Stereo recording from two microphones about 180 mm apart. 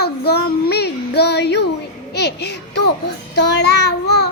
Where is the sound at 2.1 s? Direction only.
70° left (ahead or behind).